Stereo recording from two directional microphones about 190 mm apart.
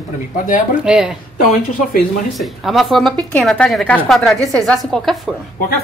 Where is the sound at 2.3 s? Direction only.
Centre (ahead or behind).